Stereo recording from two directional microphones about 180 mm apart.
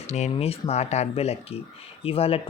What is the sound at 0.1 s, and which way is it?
Speech, 35° left (ahead or behind).